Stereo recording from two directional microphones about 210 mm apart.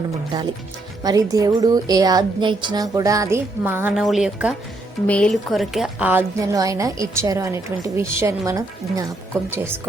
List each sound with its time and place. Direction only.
1.0 s a woman's voice: 15° right (ahead or behind)